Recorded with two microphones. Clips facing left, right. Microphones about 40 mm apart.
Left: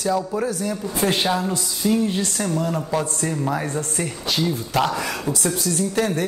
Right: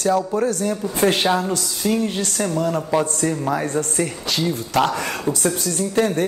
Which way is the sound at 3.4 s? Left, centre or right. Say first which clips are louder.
Right 3 dB; right.